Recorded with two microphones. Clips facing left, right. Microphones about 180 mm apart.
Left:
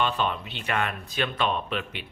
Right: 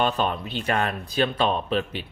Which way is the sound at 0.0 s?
40° right (ahead or behind).